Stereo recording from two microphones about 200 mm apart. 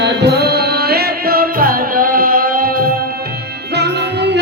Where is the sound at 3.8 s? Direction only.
55° right (ahead or behind).